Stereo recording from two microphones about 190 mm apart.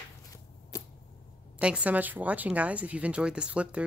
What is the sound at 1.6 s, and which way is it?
Speech, 5° right (ahead or behind).